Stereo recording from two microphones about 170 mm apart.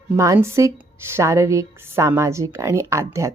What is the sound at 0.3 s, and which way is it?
A woman's voice, 15° right (ahead or behind).